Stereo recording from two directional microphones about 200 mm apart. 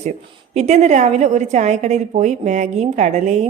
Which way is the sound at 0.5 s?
35° right (ahead or behind).